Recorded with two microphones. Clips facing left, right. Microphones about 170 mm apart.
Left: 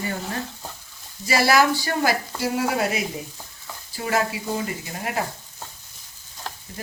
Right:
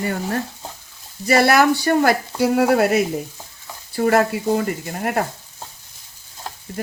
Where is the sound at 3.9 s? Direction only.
55° right (ahead or behind).